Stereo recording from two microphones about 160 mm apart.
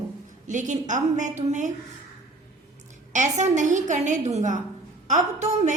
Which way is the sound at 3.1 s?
50° right (ahead or behind).